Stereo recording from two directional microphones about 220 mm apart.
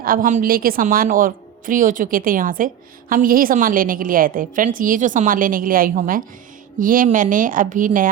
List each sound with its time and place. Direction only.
0.0 s a woman's voice: 40° right (ahead or behind)